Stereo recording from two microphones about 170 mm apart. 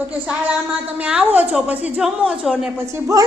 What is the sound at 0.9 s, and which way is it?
A woman's voice, 10° right (ahead or behind).